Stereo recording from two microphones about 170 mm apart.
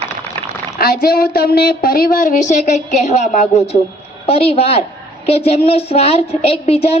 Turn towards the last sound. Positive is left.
turn(degrees=35)  # may be behind; listen again after turning